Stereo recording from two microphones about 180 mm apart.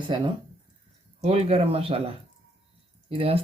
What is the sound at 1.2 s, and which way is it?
Speech, 35° right (ahead or behind).